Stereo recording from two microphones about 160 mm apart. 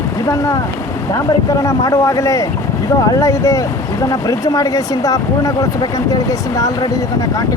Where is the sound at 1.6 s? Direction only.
20° left (ahead or behind).